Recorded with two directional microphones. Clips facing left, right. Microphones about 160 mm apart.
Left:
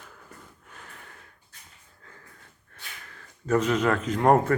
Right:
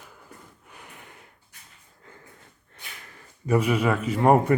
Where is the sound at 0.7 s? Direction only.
10° right (ahead or behind).